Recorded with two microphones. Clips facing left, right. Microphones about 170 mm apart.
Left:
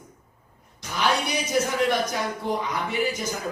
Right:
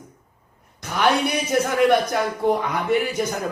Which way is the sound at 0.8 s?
55° right (ahead or behind).